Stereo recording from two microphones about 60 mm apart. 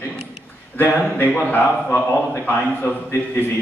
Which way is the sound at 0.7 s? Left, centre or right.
Left.